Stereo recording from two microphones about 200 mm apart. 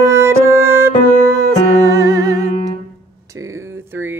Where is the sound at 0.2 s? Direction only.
15° right (ahead or behind).